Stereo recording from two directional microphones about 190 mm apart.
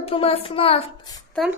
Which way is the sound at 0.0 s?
30° left (ahead or behind).